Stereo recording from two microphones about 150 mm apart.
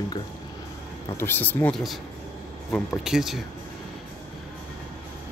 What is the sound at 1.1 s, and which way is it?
Speech, 15° left (ahead or behind).